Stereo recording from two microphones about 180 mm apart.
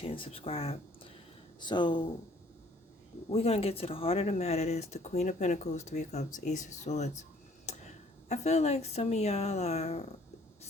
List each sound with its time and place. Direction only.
0.0 s speech: 30° left (ahead or behind)
3.2 s speech: 35° left (ahead or behind)
8.3 s speech: 40° left (ahead or behind)